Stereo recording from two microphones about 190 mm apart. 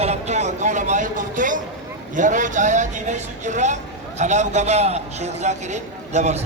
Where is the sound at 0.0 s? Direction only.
35° right (ahead or behind).